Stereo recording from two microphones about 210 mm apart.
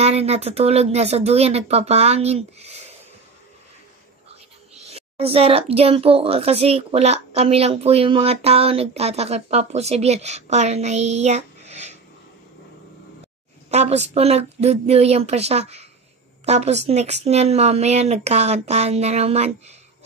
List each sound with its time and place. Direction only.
0.0 s a woman's voice: 30° right (ahead or behind)
4.3 s a woman's voice: 30° right (ahead or behind)
13.7 s a woman's voice: 30° right (ahead or behind)